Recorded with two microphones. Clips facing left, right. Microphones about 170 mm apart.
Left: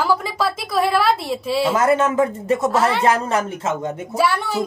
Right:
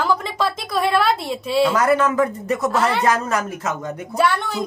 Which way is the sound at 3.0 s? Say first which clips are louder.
Left 2 dB; 25° left (ahead or behind).